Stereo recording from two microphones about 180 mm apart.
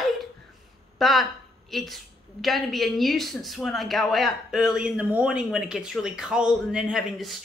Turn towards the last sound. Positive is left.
turn(degrees=0)  # may be behind; listen again after turning